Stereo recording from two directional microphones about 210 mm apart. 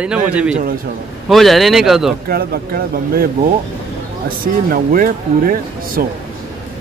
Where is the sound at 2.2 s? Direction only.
45° right (ahead or behind).